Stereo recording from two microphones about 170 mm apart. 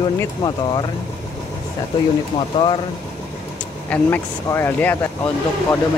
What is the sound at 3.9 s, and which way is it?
Speech, 10° left (ahead or behind).